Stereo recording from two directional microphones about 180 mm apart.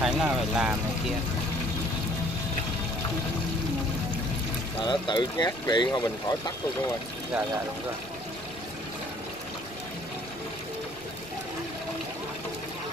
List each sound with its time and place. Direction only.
0.0 s speech: 5° right (ahead or behind)
4.8 s speech: 25° left (ahead or behind)